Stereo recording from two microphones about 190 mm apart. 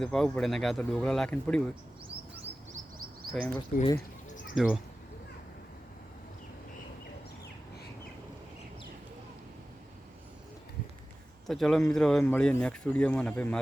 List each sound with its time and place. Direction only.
0.0 s speech: 5° left (ahead or behind)
3.7 s speech: 45° left (ahead or behind)
4.5 s speech: centre (ahead or behind)
11.4 s speech: centre (ahead or behind)